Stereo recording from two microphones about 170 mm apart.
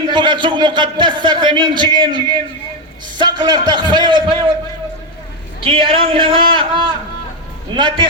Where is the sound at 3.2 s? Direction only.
25° right (ahead or behind).